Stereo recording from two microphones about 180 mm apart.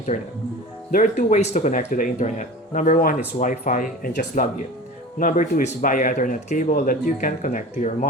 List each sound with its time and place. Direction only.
0.1 s speech: 40° left (ahead or behind)
5.2 s speech: 45° left (ahead or behind)